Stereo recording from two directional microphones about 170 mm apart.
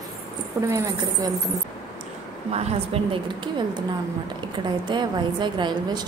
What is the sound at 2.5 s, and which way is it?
A woman's voice, 35° right (ahead or behind).